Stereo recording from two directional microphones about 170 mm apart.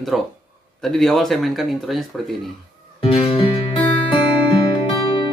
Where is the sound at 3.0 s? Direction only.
35° left (ahead or behind).